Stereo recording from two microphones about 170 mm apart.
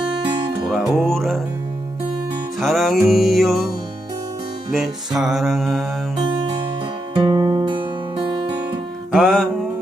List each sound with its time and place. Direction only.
0.7 s music: centre (ahead or behind)
2.6 s music: centre (ahead or behind)
4.7 s music: centre (ahead or behind)
7.2 s music: 30° right (ahead or behind)
9.1 s music: centre (ahead or behind)